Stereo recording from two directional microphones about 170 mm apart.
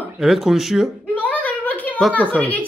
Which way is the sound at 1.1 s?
10° left (ahead or behind).